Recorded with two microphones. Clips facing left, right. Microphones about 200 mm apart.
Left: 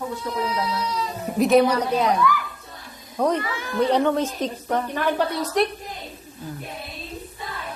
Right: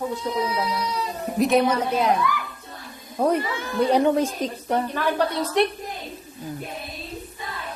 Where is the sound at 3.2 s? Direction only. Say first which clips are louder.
Right 1 dB; 10° right (ahead or behind).